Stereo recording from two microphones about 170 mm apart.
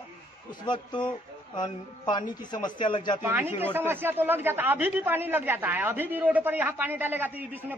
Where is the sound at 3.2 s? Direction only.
10° right (ahead or behind).